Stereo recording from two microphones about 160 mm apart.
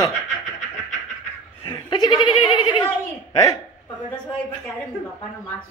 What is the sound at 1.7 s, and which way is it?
Goat, 25° left (ahead or behind).